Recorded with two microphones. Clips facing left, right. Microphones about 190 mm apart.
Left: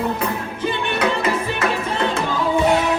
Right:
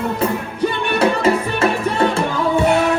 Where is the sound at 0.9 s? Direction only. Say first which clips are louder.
Right 6 dB; 30° right (ahead or behind).